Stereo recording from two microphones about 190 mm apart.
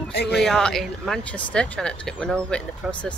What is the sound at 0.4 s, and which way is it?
Speech, 5° left (ahead or behind).